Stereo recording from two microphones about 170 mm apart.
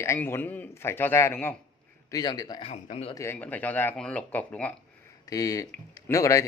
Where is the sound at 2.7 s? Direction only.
40° left (ahead or behind).